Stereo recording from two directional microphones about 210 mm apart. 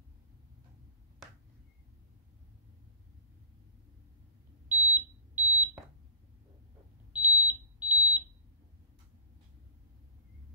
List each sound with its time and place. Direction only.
4.6 s smoke detector: 10° right (ahead or behind)
7.2 s smoke detector: 10° right (ahead or behind)